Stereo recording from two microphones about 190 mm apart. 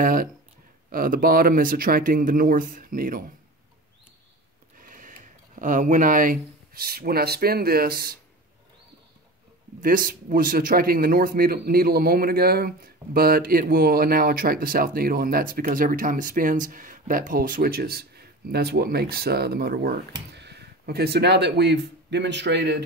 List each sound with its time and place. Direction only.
0.0 s a man's voice: 45° right (ahead or behind)
4.7 s a sound: 45° right (ahead or behind)
5.6 s a man's voice: 45° right (ahead or behind)
9.8 s a man's voice: 45° right (ahead or behind); by 22.8 s 65° right (ahead or behind)